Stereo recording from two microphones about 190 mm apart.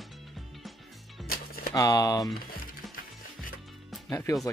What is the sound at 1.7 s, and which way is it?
Speech, 20° left (ahead or behind).